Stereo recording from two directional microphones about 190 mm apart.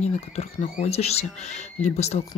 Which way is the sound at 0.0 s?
35° left (ahead or behind).